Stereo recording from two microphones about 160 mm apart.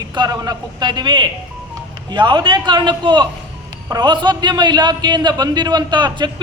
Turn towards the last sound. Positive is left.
turn(degrees=-30)  # may be behind; listen again after turning